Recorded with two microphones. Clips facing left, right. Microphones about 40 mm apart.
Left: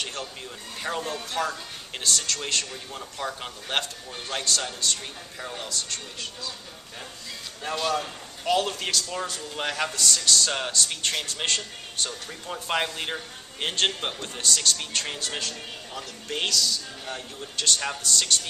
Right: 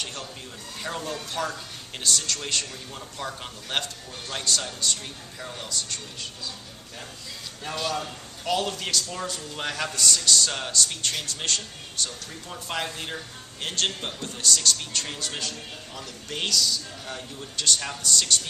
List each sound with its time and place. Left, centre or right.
0.0 s a man's voice: centre
7.6 s a man's voice: centre